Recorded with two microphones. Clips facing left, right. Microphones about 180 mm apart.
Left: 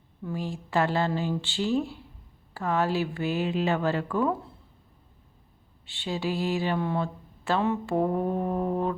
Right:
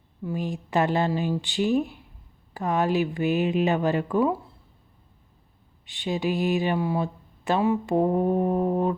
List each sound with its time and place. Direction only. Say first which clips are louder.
0.3 s speech: right 3 dB; 20° right (ahead or behind)
5.8 s speech: right 4 dB; 15° right (ahead or behind)